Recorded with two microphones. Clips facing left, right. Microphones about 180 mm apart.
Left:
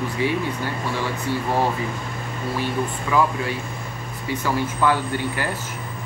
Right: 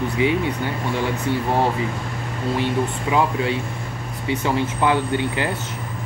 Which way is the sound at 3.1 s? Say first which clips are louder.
Even; 20° right (ahead or behind).